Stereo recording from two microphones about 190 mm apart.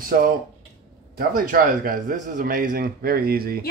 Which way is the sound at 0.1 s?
50° right (ahead or behind).